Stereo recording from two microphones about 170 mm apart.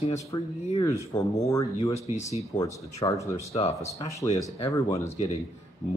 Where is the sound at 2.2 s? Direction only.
40° left (ahead or behind).